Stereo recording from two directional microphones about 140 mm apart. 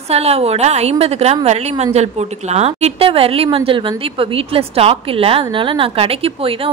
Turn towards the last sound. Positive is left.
turn(degrees=-40)  # may be behind; listen again after turning